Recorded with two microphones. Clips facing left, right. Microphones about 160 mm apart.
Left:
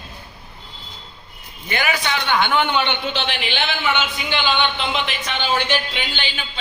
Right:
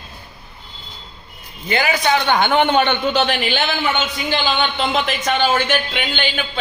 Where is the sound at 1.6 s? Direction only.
30° right (ahead or behind).